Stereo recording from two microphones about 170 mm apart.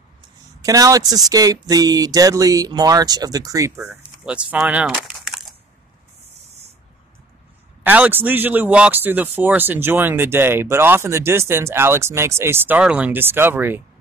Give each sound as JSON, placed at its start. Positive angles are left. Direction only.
{"t": 0.6, "sound": "a man's voice", "side_deg": -20}
{"t": 4.9, "sound": "a sound", "side_deg": 0}
{"t": 7.8, "sound": "a man's voice", "side_deg": -10}